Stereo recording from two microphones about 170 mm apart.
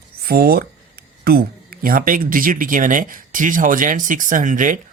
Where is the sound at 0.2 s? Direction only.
60° right (ahead or behind).